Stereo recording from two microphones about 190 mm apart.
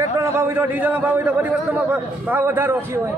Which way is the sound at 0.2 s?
15° right (ahead or behind).